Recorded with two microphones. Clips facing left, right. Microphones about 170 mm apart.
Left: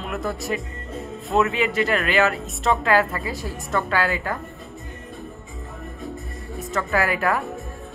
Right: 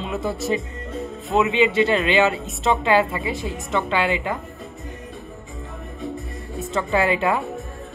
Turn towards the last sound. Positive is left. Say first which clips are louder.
# right 2 dB
turn(degrees=-25)  # may be behind; listen again after turning